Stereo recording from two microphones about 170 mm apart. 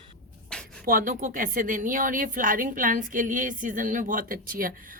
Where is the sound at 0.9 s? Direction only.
55° right (ahead or behind).